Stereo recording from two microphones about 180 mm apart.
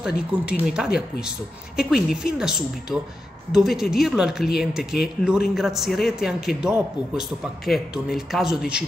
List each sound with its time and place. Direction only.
0.0 s a man's voice: 5° right (ahead or behind)
0.8 s speech: 60° left (ahead or behind)
1.8 s a man's voice: centre (ahead or behind)